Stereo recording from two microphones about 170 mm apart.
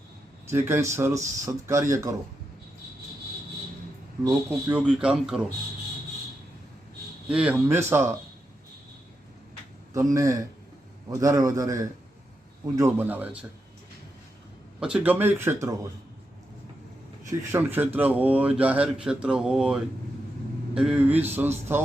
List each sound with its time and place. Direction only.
0.5 s speech: 15° right (ahead or behind)
4.2 s speech: 15° right (ahead or behind)
7.3 s speech: 5° right (ahead or behind)
10.2 s a man's voice: 20° right (ahead or behind)
14.8 s speech: 5° right (ahead or behind)
17.2 s speech: 15° right (ahead or behind)